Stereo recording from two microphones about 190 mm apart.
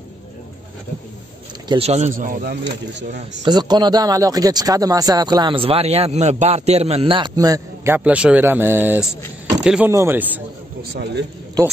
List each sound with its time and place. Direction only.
1.7 s speech: 35° right (ahead or behind)
2.6 s speech: 70° right (ahead or behind)
3.4 s a man's voice: 20° right (ahead or behind)
10.8 s speech: 60° right (ahead or behind)
11.6 s a man's voice: 20° right (ahead or behind)